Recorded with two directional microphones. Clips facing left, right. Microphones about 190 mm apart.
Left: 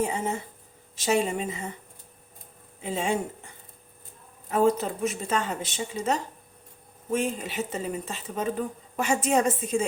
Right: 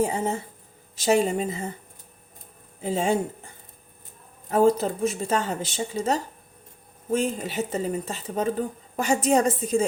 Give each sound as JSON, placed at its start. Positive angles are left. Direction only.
{"t": 0.0, "sound": "a woman's voice", "side_deg": -35}
{"t": 2.8, "sound": "speech", "side_deg": -35}
{"t": 4.4, "sound": "speech", "side_deg": -35}